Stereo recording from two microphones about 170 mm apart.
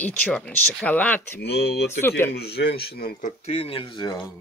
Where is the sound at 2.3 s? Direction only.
70° left (ahead or behind).